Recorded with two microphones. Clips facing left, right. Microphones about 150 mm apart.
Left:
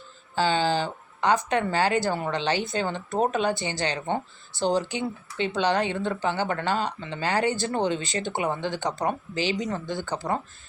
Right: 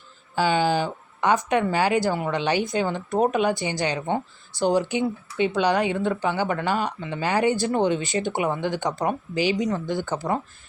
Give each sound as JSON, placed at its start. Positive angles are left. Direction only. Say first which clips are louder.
{"t": 0.3, "sound": "speech", "louder": "right 2 dB", "side_deg": -15}